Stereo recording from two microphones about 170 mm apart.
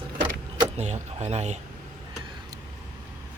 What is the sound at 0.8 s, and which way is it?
Speech, 40° right (ahead or behind).